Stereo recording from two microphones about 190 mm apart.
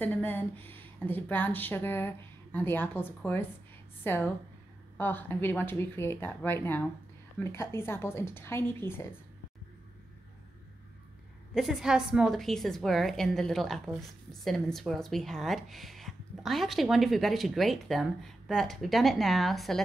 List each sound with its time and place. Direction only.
0.0 s speech: 10° left (ahead or behind)
11.5 s a woman's voice: centre (ahead or behind)